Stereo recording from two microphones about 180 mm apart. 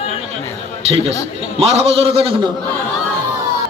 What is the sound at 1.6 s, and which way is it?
Music, 35° right (ahead or behind).